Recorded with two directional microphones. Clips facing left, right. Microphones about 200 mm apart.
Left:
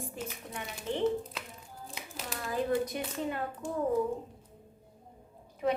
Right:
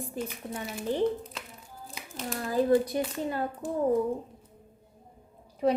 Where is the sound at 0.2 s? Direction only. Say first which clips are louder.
Right 9 dB; 35° right (ahead or behind).